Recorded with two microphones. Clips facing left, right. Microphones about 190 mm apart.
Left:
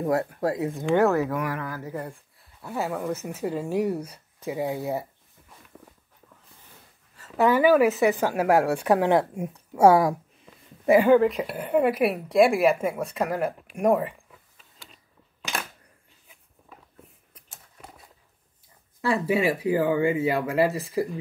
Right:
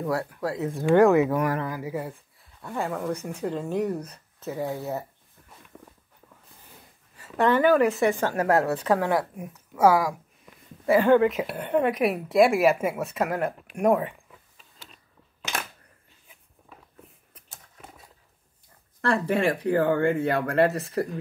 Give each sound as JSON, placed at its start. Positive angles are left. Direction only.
{"t": 0.0, "sound": "speech", "side_deg": 20}
{"t": 0.6, "sound": "speech", "side_deg": 0}
{"t": 1.1, "sound": "speech", "side_deg": -20}
{"t": 1.7, "sound": "speech", "side_deg": -10}
{"t": 7.3, "sound": "speech", "side_deg": 5}
{"t": 11.1, "sound": "speech", "side_deg": 0}
{"t": 18.9, "sound": "speech", "side_deg": 5}